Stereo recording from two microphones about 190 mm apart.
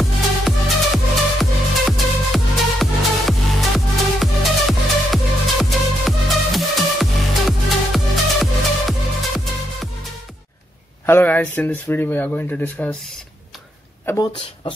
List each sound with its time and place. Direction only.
0.0 s music: centre (ahead or behind)
11.1 s speech: 10° left (ahead or behind)
14.0 s speech: 20° left (ahead or behind)